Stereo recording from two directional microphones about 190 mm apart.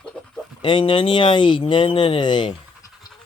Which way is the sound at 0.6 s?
25° left (ahead or behind).